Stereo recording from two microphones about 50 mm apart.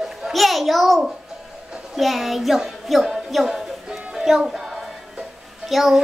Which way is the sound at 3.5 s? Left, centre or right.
Centre.